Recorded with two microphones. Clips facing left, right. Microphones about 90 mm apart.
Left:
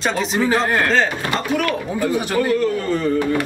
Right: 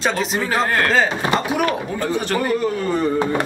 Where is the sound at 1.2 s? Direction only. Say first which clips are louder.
Right 1 dB; 20° right (ahead or behind).